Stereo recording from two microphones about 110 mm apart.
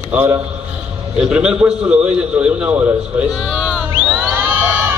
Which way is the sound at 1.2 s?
10° right (ahead or behind).